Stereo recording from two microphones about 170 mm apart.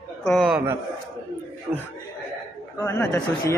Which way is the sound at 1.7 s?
15° right (ahead or behind).